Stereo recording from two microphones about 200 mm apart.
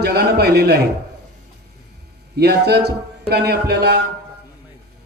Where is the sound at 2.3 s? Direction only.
55° right (ahead or behind).